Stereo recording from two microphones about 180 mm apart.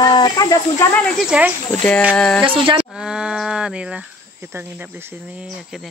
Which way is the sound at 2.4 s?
30° right (ahead or behind).